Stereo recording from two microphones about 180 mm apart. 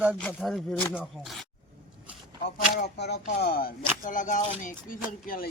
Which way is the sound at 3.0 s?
65° left (ahead or behind).